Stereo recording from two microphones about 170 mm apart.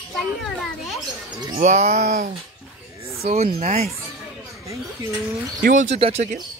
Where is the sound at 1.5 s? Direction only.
40° right (ahead or behind).